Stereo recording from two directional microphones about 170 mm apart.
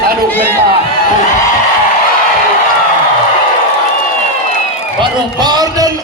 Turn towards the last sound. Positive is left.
turn(degrees=-25)  # may be behind; listen again after turning